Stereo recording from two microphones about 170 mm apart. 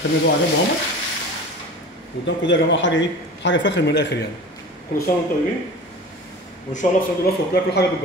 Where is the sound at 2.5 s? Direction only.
90° left.